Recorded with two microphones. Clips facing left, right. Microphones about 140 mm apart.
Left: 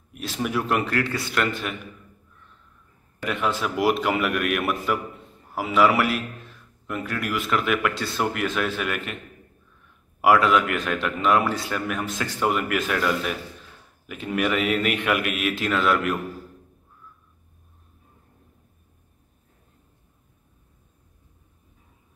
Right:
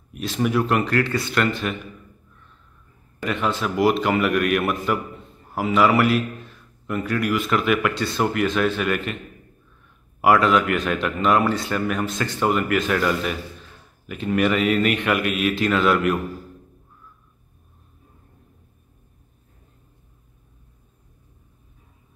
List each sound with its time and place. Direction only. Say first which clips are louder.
0.1 s a man's voice: right 5 dB; 5° left (ahead or behind)
3.3 s a man's voice: right 2 dB; 5° left (ahead or behind)
10.2 s a man's voice: right 1 dB; 5° left (ahead or behind)